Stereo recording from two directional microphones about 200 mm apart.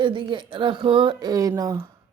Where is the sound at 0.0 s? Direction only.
25° right (ahead or behind).